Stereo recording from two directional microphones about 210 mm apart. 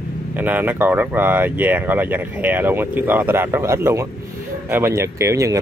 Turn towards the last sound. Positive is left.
turn(degrees=-15)  # may be behind; listen again after turning